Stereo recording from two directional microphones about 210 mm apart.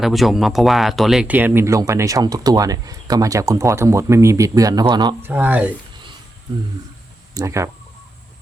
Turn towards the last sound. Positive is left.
turn(degrees=-15)  # may be behind; listen again after turning